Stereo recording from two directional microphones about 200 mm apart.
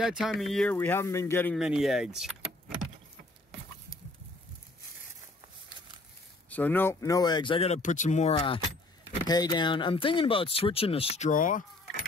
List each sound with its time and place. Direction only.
0.0 s speech: centre (ahead or behind)
1.6 s speech: 5° right (ahead or behind)
6.5 s speech: 10° left (ahead or behind); by 8.4 s 35° left (ahead or behind)
8.4 s speech: 20° left (ahead or behind); by 11.6 s 40° left (ahead or behind)